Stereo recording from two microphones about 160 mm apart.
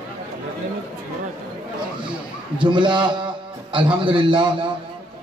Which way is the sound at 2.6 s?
30° right (ahead or behind).